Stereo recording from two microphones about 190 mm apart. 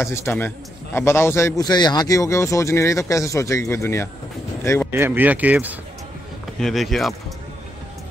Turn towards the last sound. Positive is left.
turn(degrees=0)  # may be behind; listen again after turning